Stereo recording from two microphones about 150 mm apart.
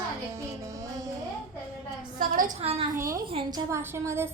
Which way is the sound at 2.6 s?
40° right (ahead or behind).